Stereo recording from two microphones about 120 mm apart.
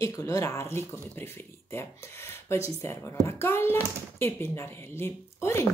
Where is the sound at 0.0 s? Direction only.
25° left (ahead or behind).